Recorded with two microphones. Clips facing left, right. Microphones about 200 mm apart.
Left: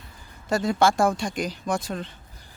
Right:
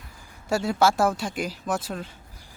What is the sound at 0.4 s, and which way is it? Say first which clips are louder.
Speech: left 1 dB; 10° right (ahead or behind).